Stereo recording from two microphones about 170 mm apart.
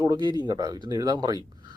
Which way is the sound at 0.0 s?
25° right (ahead or behind).